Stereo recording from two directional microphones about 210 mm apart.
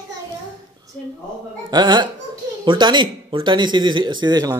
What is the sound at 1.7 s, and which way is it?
A man's voice, 20° right (ahead or behind).